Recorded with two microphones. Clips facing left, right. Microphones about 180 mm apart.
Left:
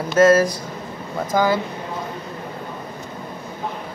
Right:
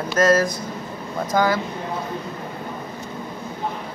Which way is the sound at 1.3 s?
10° left (ahead or behind).